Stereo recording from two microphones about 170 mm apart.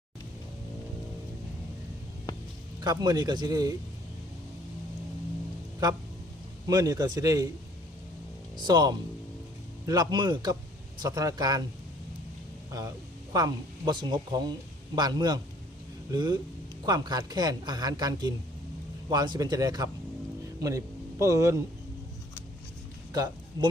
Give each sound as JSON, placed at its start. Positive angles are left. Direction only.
{"t": 2.8, "sound": "a woman's voice", "side_deg": -25}
{"t": 5.8, "sound": "a woman's voice", "side_deg": -25}
{"t": 8.5, "sound": "a woman's voice", "side_deg": -25}
{"t": 13.3, "sound": "a woman's voice", "side_deg": -25}
{"t": 23.1, "sound": "a man's voice", "side_deg": -20}